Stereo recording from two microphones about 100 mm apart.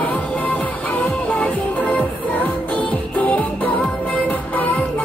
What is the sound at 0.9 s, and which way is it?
Music, 10° left (ahead or behind).